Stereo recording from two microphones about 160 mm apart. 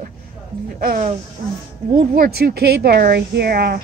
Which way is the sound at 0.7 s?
60° right (ahead or behind).